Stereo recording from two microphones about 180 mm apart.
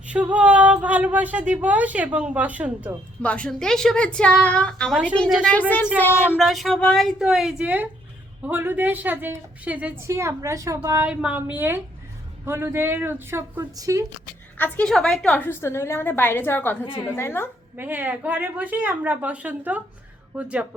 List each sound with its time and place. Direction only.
0.0 s a woman's voice: 5° right (ahead or behind)
3.2 s a woman's voice: 5° left (ahead or behind)
6.4 s a woman's voice: centre (ahead or behind); by 14.0 s 20° right (ahead or behind)
14.6 s a woman's voice: 5° left (ahead or behind)
17.7 s a woman's voice: 10° right (ahead or behind)